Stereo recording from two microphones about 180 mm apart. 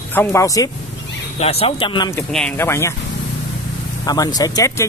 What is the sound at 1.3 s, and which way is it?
Speech, 35° left (ahead or behind).